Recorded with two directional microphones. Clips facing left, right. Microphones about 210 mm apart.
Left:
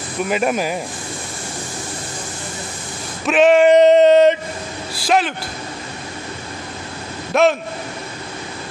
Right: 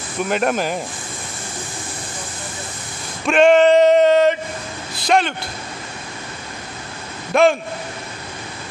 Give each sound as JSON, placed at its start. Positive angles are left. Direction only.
{"t": 0.3, "sound": "male singing", "side_deg": 5}
{"t": 3.3, "sound": "male singing", "side_deg": 5}
{"t": 3.7, "sound": "a sound", "side_deg": 20}
{"t": 4.9, "sound": "male singing", "side_deg": 5}
{"t": 7.3, "sound": "male singing", "side_deg": 0}